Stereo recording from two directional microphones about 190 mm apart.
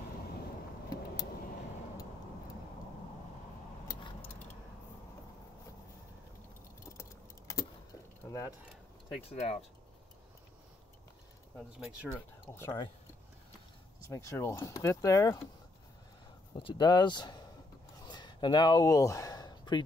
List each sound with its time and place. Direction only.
6.9 s keys jangling: 15° left (ahead or behind)
9.3 s speech: 35° left (ahead or behind)
11.5 s speech: centre (ahead or behind)
12.5 s speech: 20° left (ahead or behind)
14.1 s speech: 15° left (ahead or behind)
16.5 s speech: 25° left (ahead or behind)
18.0 s a sound: 25° left (ahead or behind)